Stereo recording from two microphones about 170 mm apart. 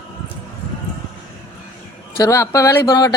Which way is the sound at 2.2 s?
20° left (ahead or behind).